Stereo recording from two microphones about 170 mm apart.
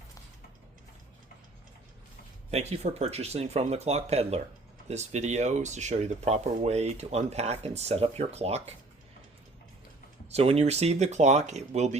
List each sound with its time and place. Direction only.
2.5 s speech: 40° right (ahead or behind)
10.3 s speech: 40° right (ahead or behind)